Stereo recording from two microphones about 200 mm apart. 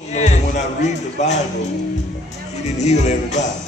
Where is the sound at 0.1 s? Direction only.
35° left (ahead or behind).